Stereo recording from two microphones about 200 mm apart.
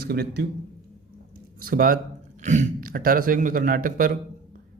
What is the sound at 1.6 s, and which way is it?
A man's voice, 45° right (ahead or behind).